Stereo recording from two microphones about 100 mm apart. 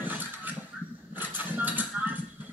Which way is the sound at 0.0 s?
20° right (ahead or behind).